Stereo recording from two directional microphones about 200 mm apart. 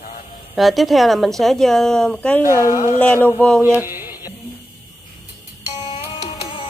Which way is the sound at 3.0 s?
10° left (ahead or behind).